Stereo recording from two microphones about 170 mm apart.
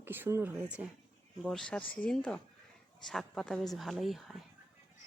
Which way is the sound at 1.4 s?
5° left (ahead or behind).